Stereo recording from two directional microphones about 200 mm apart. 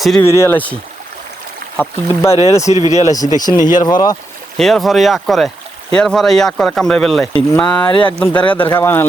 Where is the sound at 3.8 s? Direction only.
20° left (ahead or behind).